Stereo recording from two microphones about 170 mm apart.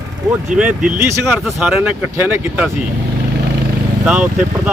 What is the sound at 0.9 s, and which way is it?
Speech, 15° right (ahead or behind).